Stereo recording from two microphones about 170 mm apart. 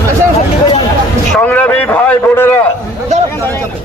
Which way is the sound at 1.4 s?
10° left (ahead or behind).